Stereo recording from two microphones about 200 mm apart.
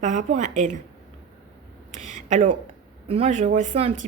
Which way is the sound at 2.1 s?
40° right (ahead or behind).